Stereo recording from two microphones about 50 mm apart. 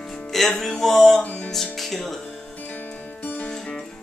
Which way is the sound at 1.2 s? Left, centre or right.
Left.